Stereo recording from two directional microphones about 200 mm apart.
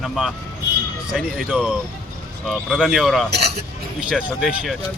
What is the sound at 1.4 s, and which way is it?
Speech, centre (ahead or behind).